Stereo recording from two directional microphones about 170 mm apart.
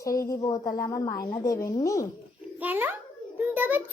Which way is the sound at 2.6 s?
10° right (ahead or behind).